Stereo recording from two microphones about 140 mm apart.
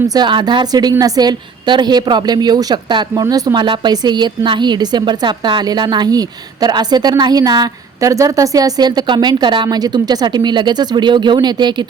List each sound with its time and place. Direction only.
0.1 s a woman's voice: 30° right (ahead or behind)